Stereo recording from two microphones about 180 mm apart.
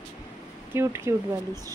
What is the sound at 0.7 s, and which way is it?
Speech, 15° right (ahead or behind).